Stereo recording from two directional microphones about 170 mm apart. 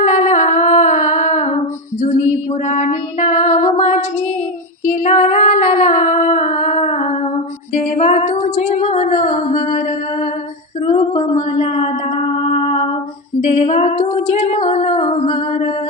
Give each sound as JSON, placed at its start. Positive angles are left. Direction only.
{"t": 0.0, "sound": "music", "side_deg": 45}
{"t": 2.6, "sound": "music", "side_deg": 40}
{"t": 4.9, "sound": "female singing", "side_deg": 45}
{"t": 7.9, "sound": "a sound", "side_deg": 40}
{"t": 10.8, "sound": "female singing", "side_deg": 30}
{"t": 11.3, "sound": "a sound", "side_deg": 35}
{"t": 13.7, "sound": "female singing", "side_deg": 40}